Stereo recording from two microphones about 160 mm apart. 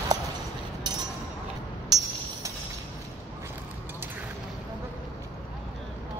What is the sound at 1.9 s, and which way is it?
Music, 25° right (ahead or behind).